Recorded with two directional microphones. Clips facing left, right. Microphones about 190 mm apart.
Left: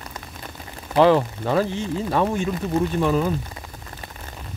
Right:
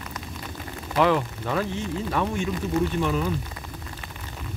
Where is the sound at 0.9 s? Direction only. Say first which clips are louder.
Left 6 dB; 30° left (ahead or behind).